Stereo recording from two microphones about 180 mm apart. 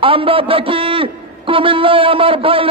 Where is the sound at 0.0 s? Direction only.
30° right (ahead or behind).